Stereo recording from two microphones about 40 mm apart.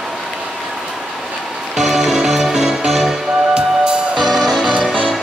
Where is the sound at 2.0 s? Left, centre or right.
Centre.